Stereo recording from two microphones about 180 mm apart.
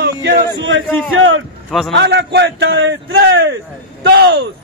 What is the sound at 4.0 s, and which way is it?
Speech, 65° right (ahead or behind).